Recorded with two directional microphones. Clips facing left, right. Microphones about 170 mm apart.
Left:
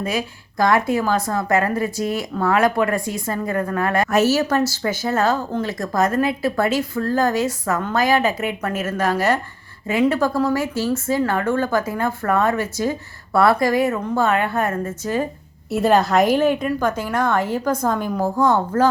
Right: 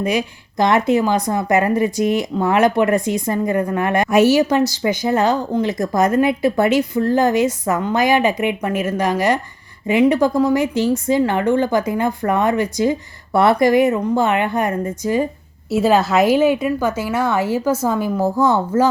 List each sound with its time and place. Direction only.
0.0 s speech: 20° right (ahead or behind)